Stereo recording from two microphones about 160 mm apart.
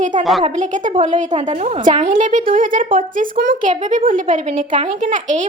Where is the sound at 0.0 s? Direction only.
50° right (ahead or behind).